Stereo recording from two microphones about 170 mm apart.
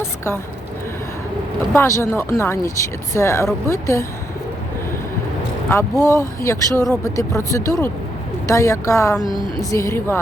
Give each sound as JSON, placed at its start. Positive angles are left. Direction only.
{"t": 1.7, "sound": "speech", "side_deg": 15}
{"t": 5.6, "sound": "speech", "side_deg": 15}